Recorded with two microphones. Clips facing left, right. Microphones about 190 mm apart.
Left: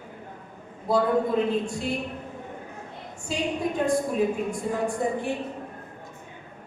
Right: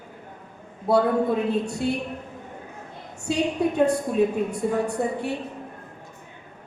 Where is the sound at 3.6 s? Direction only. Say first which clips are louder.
Right 3 dB; 70° right (ahead or behind).